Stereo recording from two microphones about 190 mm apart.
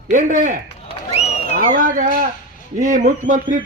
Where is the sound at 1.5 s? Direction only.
45° right (ahead or behind).